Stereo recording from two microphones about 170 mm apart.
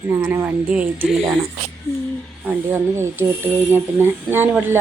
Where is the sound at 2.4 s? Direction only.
10° right (ahead or behind).